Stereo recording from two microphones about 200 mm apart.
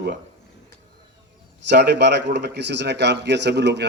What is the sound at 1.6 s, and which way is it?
A man's voice, 60° right (ahead or behind).